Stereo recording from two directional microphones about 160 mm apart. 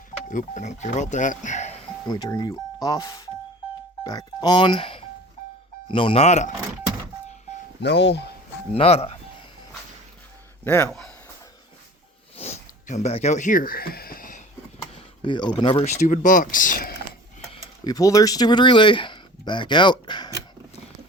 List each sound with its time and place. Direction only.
0.3 s speech: 50° left (ahead or behind)
2.0 s speech: 25° left (ahead or behind); by 6.5 s 45° left (ahead or behind)
7.8 s speech: 90° left
8.7 s speech: 40° left (ahead or behind)
10.6 s a man's voice: 15° left (ahead or behind)
10.8 s speech: 5° left (ahead or behind)
12.4 s a sound: 45° left (ahead or behind); by 14.4 s 60° left (ahead or behind)
14.9 s speech: 30° left (ahead or behind); by 16.9 s 60° left (ahead or behind)
17.8 s speech: 20° left (ahead or behind)